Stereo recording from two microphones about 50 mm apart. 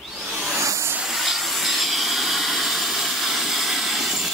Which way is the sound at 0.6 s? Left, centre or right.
Right.